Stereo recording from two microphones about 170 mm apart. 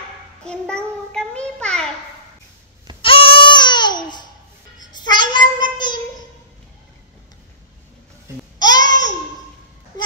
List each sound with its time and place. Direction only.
0.5 s child singing: 5° left (ahead or behind)
3.0 s babbling: 30° left (ahead or behind)
4.7 s child singing: 25° left (ahead or behind)
8.5 s babbling: 25° left (ahead or behind)